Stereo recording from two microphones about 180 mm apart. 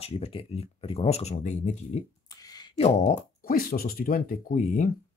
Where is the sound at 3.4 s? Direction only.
55° left (ahead or behind).